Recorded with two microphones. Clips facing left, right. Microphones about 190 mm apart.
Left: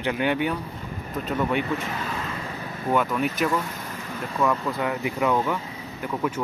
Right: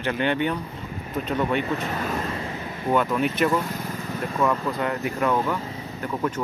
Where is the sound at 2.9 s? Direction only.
Centre (ahead or behind).